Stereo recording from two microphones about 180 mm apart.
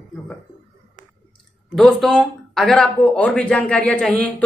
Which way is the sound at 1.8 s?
Centre (ahead or behind).